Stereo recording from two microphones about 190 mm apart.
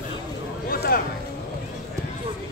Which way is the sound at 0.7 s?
50° left (ahead or behind).